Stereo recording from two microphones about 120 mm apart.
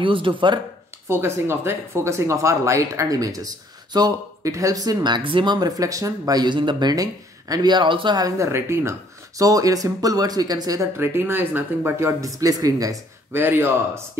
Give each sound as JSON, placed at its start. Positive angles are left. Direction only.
{"t": 0.0, "sound": "speech", "side_deg": -45}
{"t": 1.0, "sound": "speech", "side_deg": -20}
{"t": 8.4, "sound": "speech", "side_deg": -20}
{"t": 11.0, "sound": "speech", "side_deg": -20}
{"t": 13.3, "sound": "speech", "side_deg": -20}